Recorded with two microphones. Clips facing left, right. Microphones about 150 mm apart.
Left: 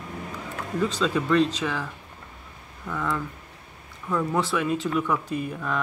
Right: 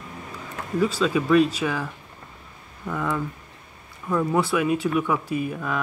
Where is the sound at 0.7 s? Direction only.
5° right (ahead or behind).